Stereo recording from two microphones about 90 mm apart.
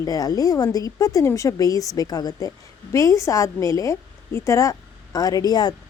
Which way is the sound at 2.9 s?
35° left (ahead or behind).